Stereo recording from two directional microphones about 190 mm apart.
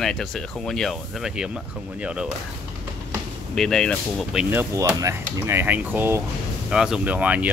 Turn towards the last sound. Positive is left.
turn(degrees=-5)  # may be behind; listen again after turning